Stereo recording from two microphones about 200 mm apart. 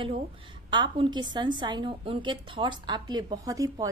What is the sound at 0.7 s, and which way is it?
A woman's voice, 25° right (ahead or behind).